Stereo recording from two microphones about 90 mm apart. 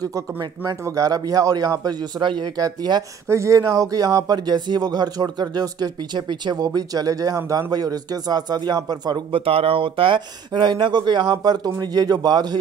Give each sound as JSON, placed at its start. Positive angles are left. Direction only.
{"t": 0.0, "sound": "speech", "side_deg": -45}
{"t": 3.3, "sound": "speech", "side_deg": -35}
{"t": 9.3, "sound": "speech", "side_deg": -90}